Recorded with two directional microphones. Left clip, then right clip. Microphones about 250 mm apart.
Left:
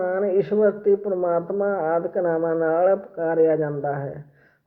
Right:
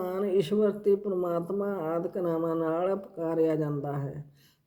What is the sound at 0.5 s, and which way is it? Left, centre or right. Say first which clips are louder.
Speech: left 7 dB; right.